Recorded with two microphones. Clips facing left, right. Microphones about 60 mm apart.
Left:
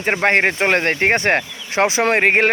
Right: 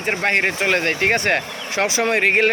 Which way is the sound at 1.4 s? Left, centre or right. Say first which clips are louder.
Right 4 dB; right.